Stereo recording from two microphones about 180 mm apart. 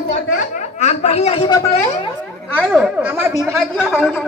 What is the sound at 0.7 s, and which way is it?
Speech, 40° left (ahead or behind).